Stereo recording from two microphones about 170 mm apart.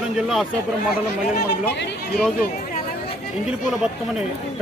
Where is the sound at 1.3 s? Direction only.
70° left (ahead or behind).